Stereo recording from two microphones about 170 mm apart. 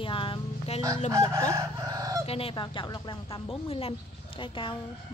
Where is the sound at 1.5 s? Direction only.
20° right (ahead or behind).